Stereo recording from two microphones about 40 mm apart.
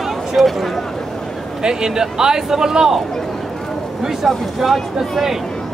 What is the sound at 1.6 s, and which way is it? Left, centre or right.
Speech, centre.